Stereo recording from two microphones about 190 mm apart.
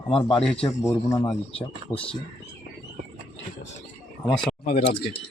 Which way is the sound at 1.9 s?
15° left (ahead or behind).